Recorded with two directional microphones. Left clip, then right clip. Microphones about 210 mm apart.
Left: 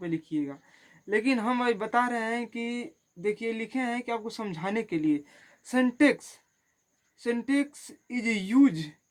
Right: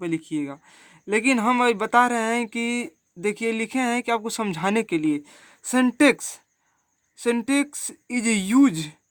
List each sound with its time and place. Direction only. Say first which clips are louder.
0.0 s speech: right 4 dB; 30° right (ahead or behind)